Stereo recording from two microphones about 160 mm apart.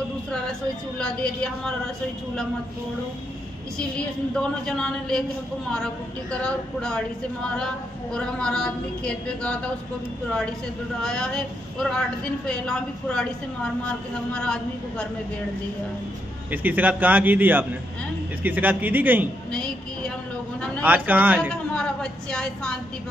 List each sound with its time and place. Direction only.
0.3 s a woman's voice: 5° left (ahead or behind)
4.3 s a woman's voice: 5° left (ahead or behind)
6.4 s a woman's voice: 5° left (ahead or behind)
11.0 s a woman's voice: 5° left (ahead or behind)
14.3 s a woman's voice: 5° left (ahead or behind)
16.4 s a man's voice: 10° right (ahead or behind)
19.5 s a woman's voice: 5° left (ahead or behind)
20.8 s a man's voice: 10° right (ahead or behind)
21.7 s a woman's voice: 5° left (ahead or behind)